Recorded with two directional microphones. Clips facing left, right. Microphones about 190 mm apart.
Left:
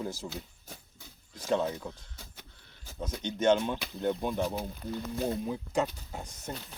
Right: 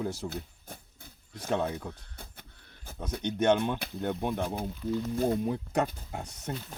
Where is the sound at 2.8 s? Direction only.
55° right (ahead or behind).